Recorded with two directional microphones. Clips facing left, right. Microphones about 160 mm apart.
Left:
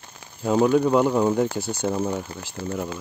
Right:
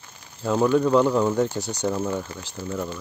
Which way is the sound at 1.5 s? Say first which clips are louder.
Left 1 dB; 50° left (ahead or behind).